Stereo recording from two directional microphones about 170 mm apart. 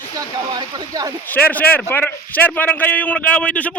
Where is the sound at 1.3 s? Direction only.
10° left (ahead or behind).